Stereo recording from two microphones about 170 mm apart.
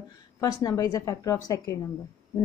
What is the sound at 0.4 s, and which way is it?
Speech, 20° left (ahead or behind).